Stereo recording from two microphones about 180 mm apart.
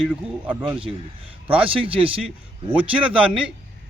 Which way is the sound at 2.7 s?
5° right (ahead or behind).